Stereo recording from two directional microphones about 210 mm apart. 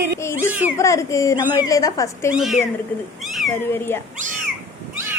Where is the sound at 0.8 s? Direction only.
15° left (ahead or behind).